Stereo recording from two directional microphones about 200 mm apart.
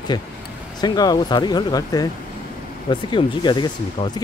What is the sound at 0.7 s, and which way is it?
Speech, 20° left (ahead or behind).